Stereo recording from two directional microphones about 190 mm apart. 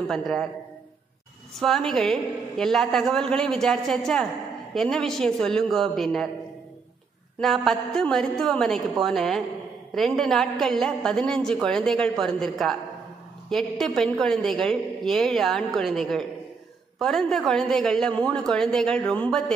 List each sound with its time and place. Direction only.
0.1 s a woman's voice: centre (ahead or behind)
1.6 s a woman's voice: centre (ahead or behind)
7.3 s a woman's voice: centre (ahead or behind)